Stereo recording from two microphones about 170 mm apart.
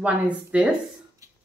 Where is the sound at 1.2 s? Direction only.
20° right (ahead or behind).